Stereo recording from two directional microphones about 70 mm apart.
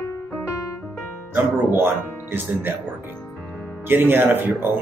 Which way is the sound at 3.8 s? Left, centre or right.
Right.